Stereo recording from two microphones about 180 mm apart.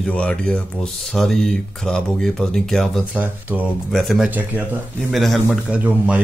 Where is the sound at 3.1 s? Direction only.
10° right (ahead or behind).